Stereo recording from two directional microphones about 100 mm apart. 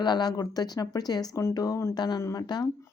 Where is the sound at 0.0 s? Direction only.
45° left (ahead or behind).